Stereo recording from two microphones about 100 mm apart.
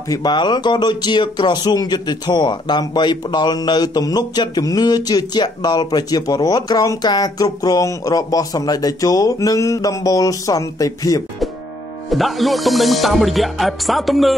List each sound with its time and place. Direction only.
0.1 s speech: 45° left (ahead or behind)
12.1 s music: centre (ahead or behind)